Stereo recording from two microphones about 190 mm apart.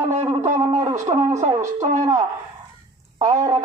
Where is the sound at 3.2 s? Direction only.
15° right (ahead or behind).